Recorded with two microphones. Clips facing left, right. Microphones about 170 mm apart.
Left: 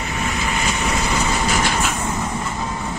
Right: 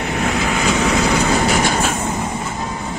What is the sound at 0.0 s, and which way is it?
Vehicle, 75° right (ahead or behind).